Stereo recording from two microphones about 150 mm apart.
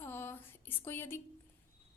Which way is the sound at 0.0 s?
15° left (ahead or behind).